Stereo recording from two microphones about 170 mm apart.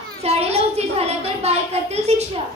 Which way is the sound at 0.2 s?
40° right (ahead or behind).